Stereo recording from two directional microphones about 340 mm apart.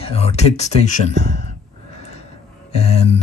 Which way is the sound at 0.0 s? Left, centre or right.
Centre.